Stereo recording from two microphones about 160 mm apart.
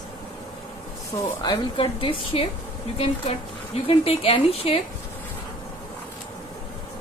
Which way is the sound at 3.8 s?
35° left (ahead or behind).